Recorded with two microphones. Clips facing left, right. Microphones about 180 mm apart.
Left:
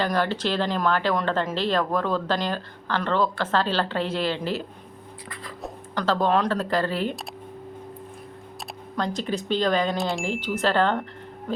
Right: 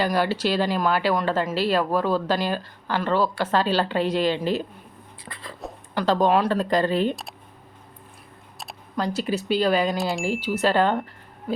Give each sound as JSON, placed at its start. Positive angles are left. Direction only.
{"t": 0.0, "sound": "speech", "side_deg": -10}
{"t": 5.3, "sound": "a sound", "side_deg": -25}
{"t": 5.9, "sound": "speech", "side_deg": -15}
{"t": 9.0, "sound": "speech", "side_deg": -5}